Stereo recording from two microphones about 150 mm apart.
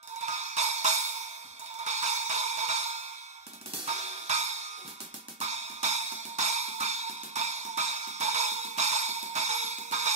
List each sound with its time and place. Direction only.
0.3 s music: 50° right (ahead or behind)
3.8 s cymbal: 50° right (ahead or behind)
5.4 s music: 50° right (ahead or behind)